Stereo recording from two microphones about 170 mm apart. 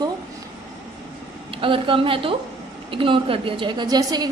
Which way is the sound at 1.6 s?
30° right (ahead or behind).